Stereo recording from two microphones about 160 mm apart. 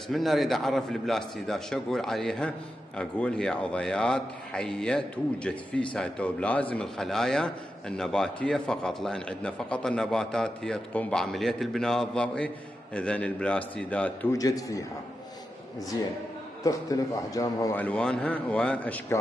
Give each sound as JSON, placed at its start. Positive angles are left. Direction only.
{"t": 0.1, "sound": "speech", "side_deg": 0}
{"t": 14.4, "sound": "a man's voice", "side_deg": 20}
{"t": 16.6, "sound": "a man's voice", "side_deg": 20}
{"t": 17.7, "sound": "speech", "side_deg": 10}